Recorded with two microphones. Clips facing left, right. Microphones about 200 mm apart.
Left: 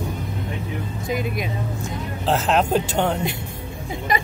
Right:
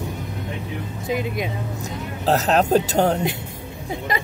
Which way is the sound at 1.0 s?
20° right (ahead or behind).